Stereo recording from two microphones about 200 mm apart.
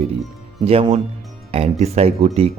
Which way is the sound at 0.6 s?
30° right (ahead or behind).